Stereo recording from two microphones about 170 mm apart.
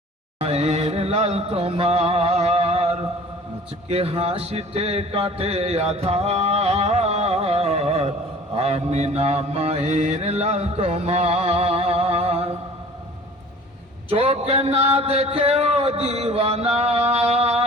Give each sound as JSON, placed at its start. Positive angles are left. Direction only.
{"t": 0.4, "sound": "music", "side_deg": -40}
{"t": 3.8, "sound": "a man's voice", "side_deg": -35}
{"t": 8.5, "sound": "mantra", "side_deg": -40}
{"t": 14.1, "sound": "speech", "side_deg": -35}